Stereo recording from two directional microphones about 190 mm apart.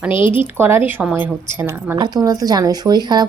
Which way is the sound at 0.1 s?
25° left (ahead or behind).